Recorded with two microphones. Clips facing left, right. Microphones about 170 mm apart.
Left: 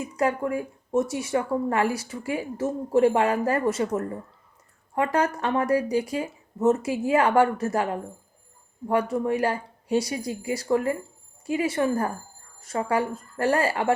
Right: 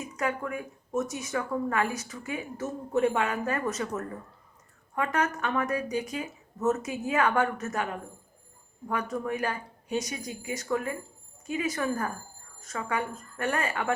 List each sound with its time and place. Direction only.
0.2 s a woman's voice: 30° left (ahead or behind)